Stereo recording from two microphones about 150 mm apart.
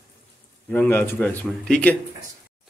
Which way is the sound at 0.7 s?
10° left (ahead or behind).